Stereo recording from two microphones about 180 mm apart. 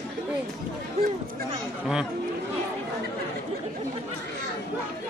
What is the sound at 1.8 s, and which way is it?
Speech, 5° right (ahead or behind).